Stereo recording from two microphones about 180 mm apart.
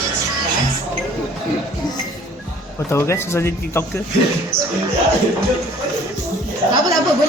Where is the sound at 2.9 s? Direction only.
15° left (ahead or behind).